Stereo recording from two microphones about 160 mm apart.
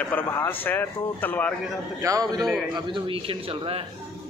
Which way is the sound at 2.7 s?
30° right (ahead or behind).